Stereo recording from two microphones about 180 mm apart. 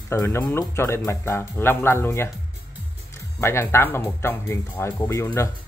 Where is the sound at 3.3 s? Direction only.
15° left (ahead or behind).